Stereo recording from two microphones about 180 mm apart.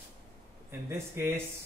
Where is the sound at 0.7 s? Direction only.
15° right (ahead or behind).